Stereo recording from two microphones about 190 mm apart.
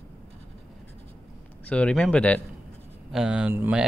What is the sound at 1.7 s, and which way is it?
Speech, 5° left (ahead or behind).